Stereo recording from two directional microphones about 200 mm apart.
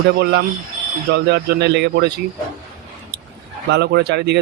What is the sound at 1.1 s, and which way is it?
Speech, 55° right (ahead or behind).